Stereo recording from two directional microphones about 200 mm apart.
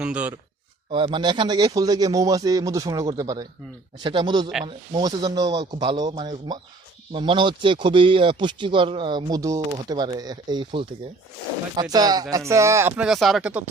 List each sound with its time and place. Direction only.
0.0 s speech: 5° right (ahead or behind)
0.9 s speech: 25° right (ahead or behind)
13.1 s speech: centre (ahead or behind)